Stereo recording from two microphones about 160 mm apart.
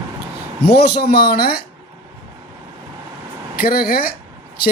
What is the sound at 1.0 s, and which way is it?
Speech, 70° left (ahead or behind).